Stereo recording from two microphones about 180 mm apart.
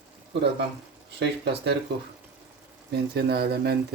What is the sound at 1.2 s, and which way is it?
Speech, 70° right (ahead or behind).